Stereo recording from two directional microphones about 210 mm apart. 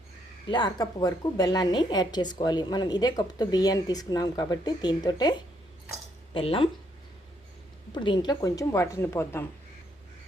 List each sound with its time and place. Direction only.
0.5 s a woman's voice: 20° left (ahead or behind)
6.3 s a woman's voice: 25° left (ahead or behind)
7.9 s a woman's voice: 20° left (ahead or behind)